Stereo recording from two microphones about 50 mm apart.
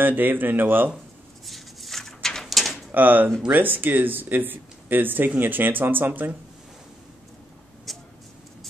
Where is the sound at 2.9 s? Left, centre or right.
Right.